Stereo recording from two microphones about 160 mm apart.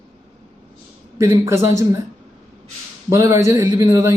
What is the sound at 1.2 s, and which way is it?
Speech, 15° right (ahead or behind).